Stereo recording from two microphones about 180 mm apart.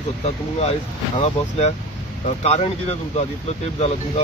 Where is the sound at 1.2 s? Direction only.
35° left (ahead or behind).